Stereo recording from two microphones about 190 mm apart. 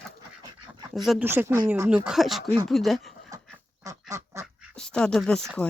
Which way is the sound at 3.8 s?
15° right (ahead or behind).